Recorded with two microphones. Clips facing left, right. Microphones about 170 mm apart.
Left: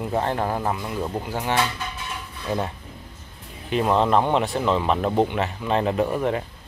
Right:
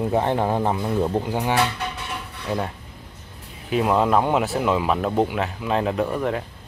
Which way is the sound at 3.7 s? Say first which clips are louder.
Right 1 dB; 5° right (ahead or behind).